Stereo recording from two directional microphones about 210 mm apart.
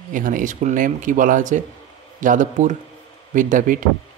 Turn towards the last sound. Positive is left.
turn(degrees=-40)  # may be behind; listen again after turning